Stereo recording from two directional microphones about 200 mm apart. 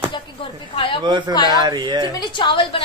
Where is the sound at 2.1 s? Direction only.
20° left (ahead or behind).